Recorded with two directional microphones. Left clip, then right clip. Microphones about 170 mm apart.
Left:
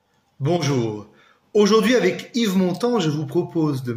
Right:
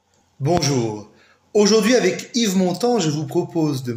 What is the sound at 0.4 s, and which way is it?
A man's voice, 15° left (ahead or behind).